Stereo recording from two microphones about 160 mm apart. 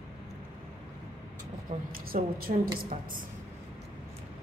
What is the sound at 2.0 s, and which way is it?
A woman's voice, 65° right (ahead or behind).